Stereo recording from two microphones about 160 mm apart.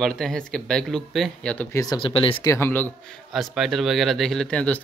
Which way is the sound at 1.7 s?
25° left (ahead or behind).